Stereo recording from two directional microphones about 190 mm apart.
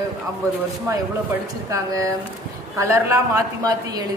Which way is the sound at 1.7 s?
15° right (ahead or behind).